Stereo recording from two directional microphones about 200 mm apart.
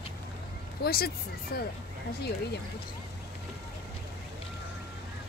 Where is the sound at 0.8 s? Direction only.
50° left (ahead or behind).